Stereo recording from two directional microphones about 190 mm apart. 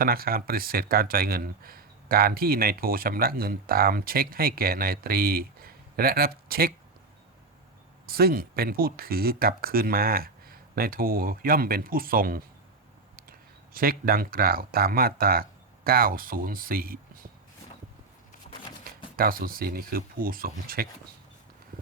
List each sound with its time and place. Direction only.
0.0 s speech: 50° right (ahead or behind)
8.0 s speech: 50° right (ahead or behind)
13.7 s speech: 50° right (ahead or behind)
18.5 s a sound: 40° left (ahead or behind)
18.9 s speech: 50° right (ahead or behind)